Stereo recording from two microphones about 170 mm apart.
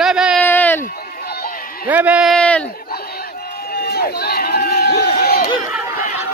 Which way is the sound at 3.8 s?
65° left (ahead or behind).